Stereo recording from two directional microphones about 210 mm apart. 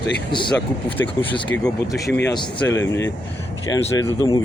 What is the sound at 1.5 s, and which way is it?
Speech, 5° left (ahead or behind).